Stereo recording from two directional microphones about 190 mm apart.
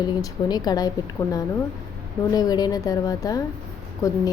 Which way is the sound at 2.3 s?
20° left (ahead or behind).